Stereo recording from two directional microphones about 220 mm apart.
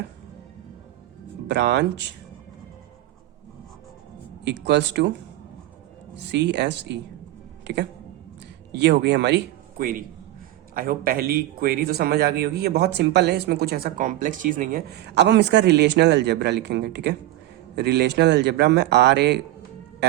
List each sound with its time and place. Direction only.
1.5 s a man's voice: 50° right (ahead or behind)
4.4 s a man's voice: 50° right (ahead or behind)
6.1 s a man's voice: 50° right (ahead or behind)
8.7 s a man's voice: 50° right (ahead or behind)